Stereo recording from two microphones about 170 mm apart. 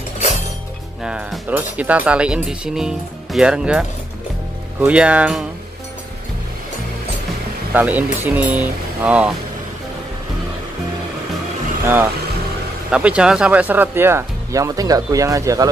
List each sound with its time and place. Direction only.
1.0 s speech: 5° right (ahead or behind)
7.7 s speech: 10° right (ahead or behind)
11.8 s speech: 15° right (ahead or behind)